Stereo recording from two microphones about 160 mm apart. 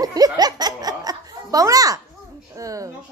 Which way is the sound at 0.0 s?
25° right (ahead or behind).